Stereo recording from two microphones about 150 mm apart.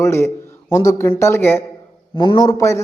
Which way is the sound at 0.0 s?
15° left (ahead or behind).